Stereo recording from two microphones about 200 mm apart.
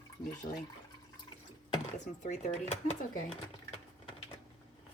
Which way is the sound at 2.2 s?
40° left (ahead or behind).